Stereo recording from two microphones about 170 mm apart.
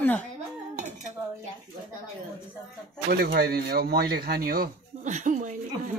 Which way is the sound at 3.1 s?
65° right (ahead or behind).